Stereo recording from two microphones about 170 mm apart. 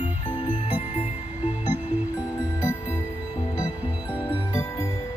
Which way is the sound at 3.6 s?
5° right (ahead or behind).